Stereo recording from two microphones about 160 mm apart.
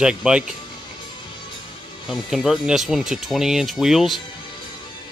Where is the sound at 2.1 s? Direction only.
Centre (ahead or behind).